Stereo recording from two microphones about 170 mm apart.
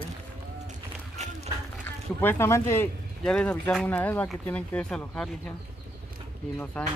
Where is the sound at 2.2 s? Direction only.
15° left (ahead or behind).